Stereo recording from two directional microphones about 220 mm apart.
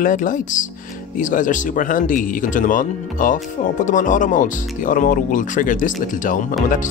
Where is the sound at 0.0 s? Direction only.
35° left (ahead or behind).